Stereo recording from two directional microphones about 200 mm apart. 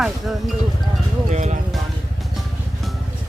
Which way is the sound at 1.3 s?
35° right (ahead or behind).